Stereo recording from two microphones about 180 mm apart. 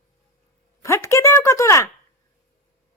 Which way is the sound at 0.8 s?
15° left (ahead or behind).